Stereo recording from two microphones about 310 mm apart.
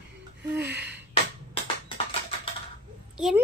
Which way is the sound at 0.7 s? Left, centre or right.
Centre.